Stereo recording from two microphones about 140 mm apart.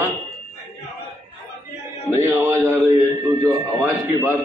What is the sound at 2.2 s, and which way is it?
Music, 15° right (ahead or behind).